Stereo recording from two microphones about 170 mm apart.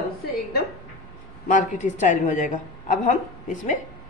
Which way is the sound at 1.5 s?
50° left (ahead or behind).